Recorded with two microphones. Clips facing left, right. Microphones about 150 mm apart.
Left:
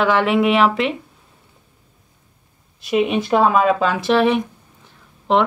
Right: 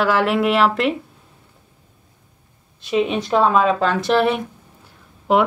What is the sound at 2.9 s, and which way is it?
Speech, 5° left (ahead or behind).